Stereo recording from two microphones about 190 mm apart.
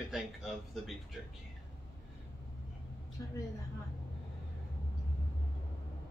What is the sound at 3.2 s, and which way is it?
Speech, 15° left (ahead or behind).